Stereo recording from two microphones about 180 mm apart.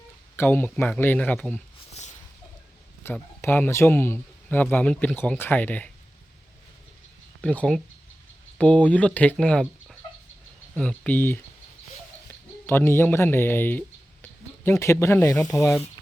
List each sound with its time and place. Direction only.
0.3 s a man's voice: 10° left (ahead or behind)
1.9 s a sound: 40° left (ahead or behind)
3.0 s a man's voice: 10° left (ahead or behind)
7.4 s a man's voice: 5° left (ahead or behind)
10.8 s a man's voice: 5° left (ahead or behind)